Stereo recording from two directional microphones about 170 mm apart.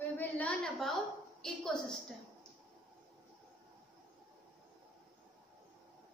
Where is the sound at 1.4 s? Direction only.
5° left (ahead or behind).